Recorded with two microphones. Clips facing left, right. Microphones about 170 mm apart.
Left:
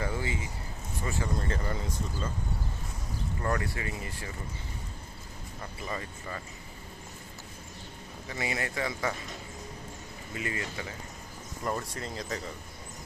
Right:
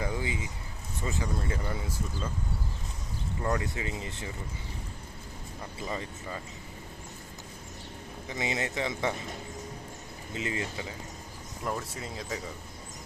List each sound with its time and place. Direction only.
0.0 s speech: 15° right (ahead or behind)
3.4 s speech: 15° right (ahead or behind)
5.9 s speech: 15° right (ahead or behind)
8.3 s speech: 20° right (ahead or behind)
10.3 s speech: 20° right (ahead or behind)
11.6 s speech: centre (ahead or behind)